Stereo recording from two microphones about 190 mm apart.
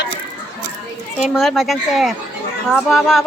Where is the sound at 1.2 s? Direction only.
Centre (ahead or behind).